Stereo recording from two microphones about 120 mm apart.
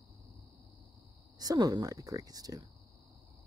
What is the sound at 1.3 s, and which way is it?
Speech, 30° right (ahead or behind).